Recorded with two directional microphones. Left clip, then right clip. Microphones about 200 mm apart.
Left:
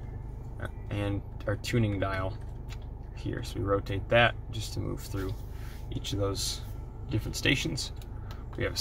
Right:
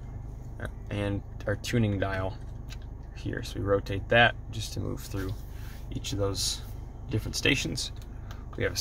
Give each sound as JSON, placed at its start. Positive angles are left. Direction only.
{"t": 0.6, "sound": "speech", "side_deg": -15}